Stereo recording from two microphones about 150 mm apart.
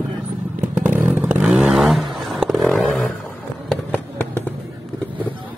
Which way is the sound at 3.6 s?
10° left (ahead or behind).